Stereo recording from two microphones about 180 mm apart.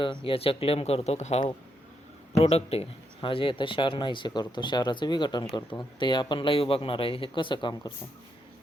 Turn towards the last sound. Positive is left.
turn(degrees=25)  # may be behind; listen again after turning